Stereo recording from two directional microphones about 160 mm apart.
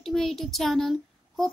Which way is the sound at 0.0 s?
Centre (ahead or behind).